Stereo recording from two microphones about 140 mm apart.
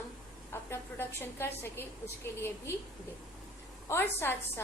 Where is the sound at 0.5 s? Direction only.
15° left (ahead or behind).